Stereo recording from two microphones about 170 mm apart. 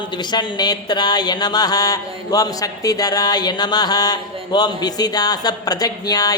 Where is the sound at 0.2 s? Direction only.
25° left (ahead or behind).